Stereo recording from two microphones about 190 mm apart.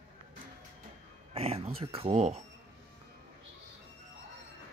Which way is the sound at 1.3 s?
30° right (ahead or behind).